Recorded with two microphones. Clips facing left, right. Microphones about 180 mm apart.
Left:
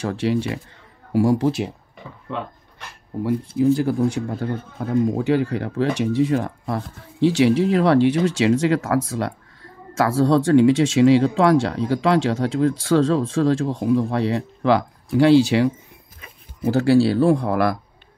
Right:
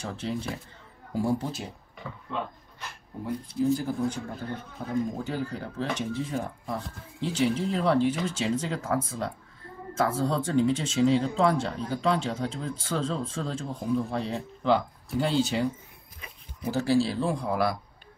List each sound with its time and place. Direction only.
0.0 s speech: 80° left
3.3 s speech: 65° left (ahead or behind)
16.7 s speech: 70° left (ahead or behind)